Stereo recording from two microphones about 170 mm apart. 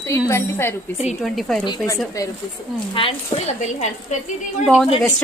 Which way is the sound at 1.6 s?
20° left (ahead or behind).